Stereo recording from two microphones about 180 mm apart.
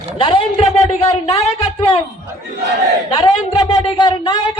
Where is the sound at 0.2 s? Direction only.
30° left (ahead or behind).